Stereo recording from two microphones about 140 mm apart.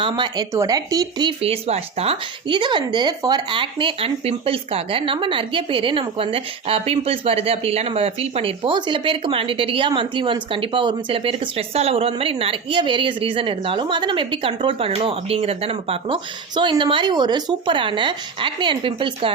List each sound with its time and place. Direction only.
0.0 s speech: 35° right (ahead or behind)